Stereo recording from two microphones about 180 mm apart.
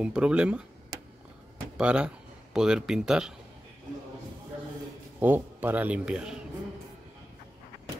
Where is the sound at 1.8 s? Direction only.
5° right (ahead or behind).